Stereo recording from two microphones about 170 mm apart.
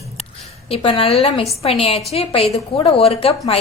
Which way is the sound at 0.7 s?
35° left (ahead or behind).